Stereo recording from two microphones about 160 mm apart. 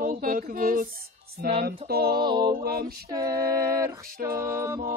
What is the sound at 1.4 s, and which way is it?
Mantra, 75° right (ahead or behind).